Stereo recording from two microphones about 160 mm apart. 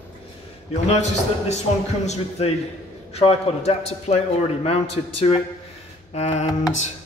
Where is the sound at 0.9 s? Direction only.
45° left (ahead or behind).